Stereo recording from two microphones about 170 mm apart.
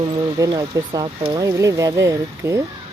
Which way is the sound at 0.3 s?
20° right (ahead or behind).